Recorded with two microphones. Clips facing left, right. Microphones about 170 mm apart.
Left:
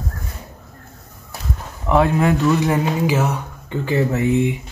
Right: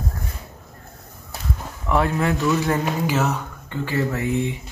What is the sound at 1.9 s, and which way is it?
Speech, 20° left (ahead or behind).